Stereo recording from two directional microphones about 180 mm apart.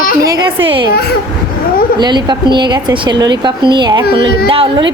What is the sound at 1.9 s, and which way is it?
A woman's voice, 25° right (ahead or behind).